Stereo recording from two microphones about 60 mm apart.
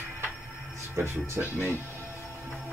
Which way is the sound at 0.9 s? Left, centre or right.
Right.